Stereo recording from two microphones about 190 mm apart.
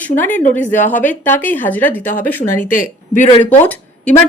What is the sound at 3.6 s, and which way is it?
Speech, 10° left (ahead or behind).